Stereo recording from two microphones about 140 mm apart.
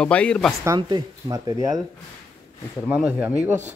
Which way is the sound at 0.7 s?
30° right (ahead or behind).